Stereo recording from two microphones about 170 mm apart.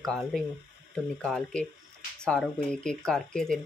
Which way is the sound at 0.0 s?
Centre (ahead or behind).